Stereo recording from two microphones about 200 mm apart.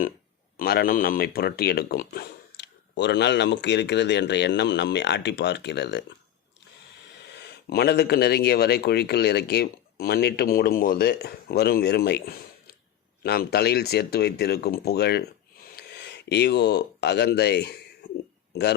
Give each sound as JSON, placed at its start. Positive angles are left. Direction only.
{"t": 0.5, "sound": "speech", "side_deg": 50}
{"t": 7.3, "sound": "speech", "side_deg": 55}